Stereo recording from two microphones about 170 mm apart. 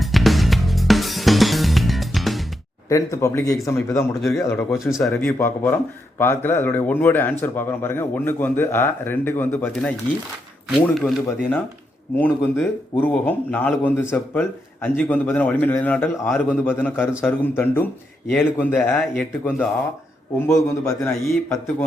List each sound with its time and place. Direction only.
0.0 s music: centre (ahead or behind)
2.9 s speech: 20° left (ahead or behind)
4.2 s speech: centre (ahead or behind)
5.1 s speech: 10° left (ahead or behind)
20.7 s speech: 15° left (ahead or behind)
21.1 s speech: centre (ahead or behind)